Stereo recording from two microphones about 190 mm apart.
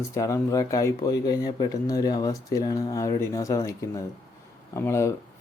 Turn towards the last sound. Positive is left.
turn(degrees=15)  # may be behind; listen again after turning